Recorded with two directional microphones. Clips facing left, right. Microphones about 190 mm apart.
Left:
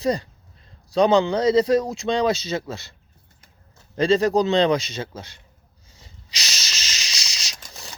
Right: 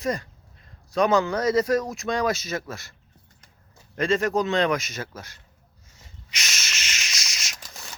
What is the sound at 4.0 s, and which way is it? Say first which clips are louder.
Speech: left 5 dB; 35° left (ahead or behind).